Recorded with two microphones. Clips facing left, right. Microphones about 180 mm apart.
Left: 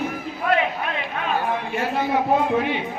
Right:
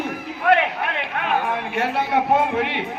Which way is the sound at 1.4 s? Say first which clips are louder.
Right 1 dB; 65° right (ahead or behind).